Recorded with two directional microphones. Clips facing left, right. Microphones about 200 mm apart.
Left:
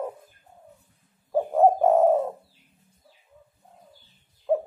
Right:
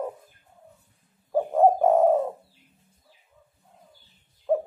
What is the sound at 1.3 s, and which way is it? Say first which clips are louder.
Bird: even; centre (ahead or behind).